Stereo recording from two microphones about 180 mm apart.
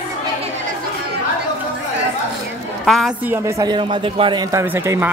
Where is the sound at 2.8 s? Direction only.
Centre (ahead or behind).